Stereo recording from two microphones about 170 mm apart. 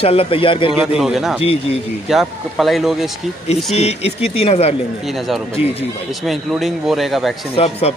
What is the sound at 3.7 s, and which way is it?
A man's voice, 40° left (ahead or behind).